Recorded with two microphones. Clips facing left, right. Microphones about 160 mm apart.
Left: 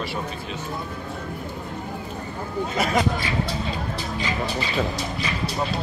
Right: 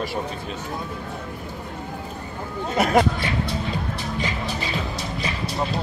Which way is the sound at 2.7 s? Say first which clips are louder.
Right 5 dB; 55° right (ahead or behind).